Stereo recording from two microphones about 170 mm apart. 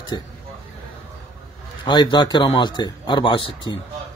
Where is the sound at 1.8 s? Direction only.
25° left (ahead or behind).